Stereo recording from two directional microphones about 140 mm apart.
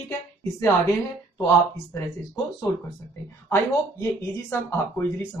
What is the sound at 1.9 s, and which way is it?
Speech, 20° left (ahead or behind).